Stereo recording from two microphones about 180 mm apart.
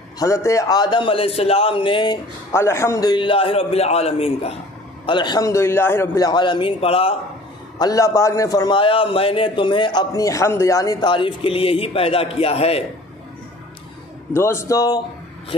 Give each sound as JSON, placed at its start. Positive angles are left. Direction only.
{"t": 0.2, "sound": "a man's voice", "side_deg": 15}
{"t": 2.5, "sound": "a man's voice", "side_deg": 15}
{"t": 7.8, "sound": "a man's voice", "side_deg": 20}
{"t": 14.3, "sound": "speech", "side_deg": 15}